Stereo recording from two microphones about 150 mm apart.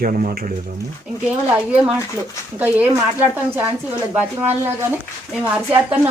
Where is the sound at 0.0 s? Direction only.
65° right (ahead or behind).